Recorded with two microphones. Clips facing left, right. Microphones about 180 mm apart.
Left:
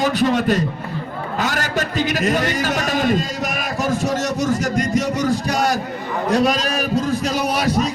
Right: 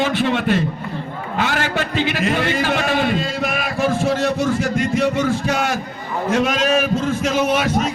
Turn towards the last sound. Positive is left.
turn(degrees=35)  # may be behind; listen again after turning